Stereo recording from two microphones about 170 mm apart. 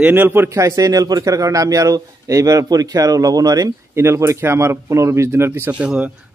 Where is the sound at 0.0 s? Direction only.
10° right (ahead or behind).